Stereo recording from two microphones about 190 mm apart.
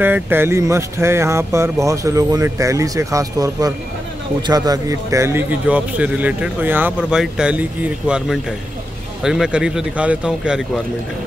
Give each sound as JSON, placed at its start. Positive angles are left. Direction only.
{"t": 0.0, "sound": "a man's voice", "side_deg": -10}